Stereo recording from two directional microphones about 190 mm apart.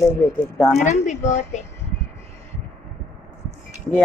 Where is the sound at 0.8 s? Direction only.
40° left (ahead or behind).